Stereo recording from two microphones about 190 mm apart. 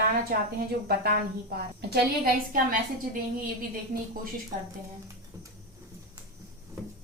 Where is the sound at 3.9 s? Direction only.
50° right (ahead or behind).